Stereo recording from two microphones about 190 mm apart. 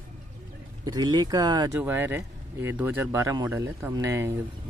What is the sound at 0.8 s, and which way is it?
Speech, 20° right (ahead or behind).